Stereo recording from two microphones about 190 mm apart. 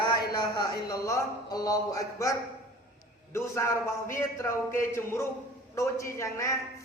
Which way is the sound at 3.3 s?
15° left (ahead or behind).